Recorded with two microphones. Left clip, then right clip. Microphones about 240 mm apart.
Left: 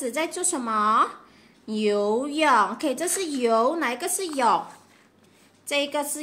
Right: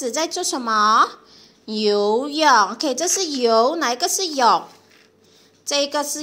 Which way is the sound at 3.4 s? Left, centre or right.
Centre.